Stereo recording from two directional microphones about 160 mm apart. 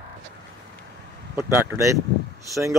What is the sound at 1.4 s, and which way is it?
Speech, 15° right (ahead or behind).